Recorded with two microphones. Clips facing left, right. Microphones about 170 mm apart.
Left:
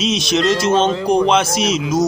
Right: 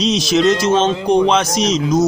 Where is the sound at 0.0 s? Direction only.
Centre (ahead or behind).